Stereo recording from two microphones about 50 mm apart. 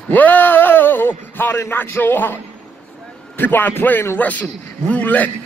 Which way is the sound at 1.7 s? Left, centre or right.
Left.